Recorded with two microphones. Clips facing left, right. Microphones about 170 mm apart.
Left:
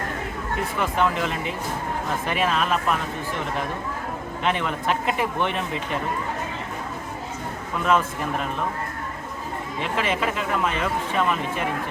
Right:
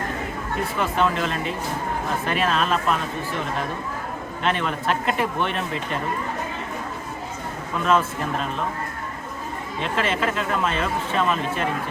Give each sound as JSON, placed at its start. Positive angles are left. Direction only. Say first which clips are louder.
{"t": 0.9, "sound": "speech", "louder": "right 1 dB", "side_deg": 15}
{"t": 4.4, "sound": "speech", "louder": "right 1 dB", "side_deg": 15}
{"t": 7.9, "sound": "speech", "louder": "right 1 dB", "side_deg": 15}
{"t": 9.8, "sound": "speech", "louder": "right 1 dB", "side_deg": 15}